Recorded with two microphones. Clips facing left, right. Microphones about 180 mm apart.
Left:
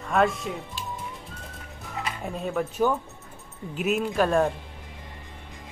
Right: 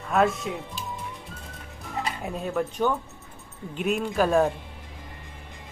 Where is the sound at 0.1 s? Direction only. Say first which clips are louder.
Even; centre (ahead or behind).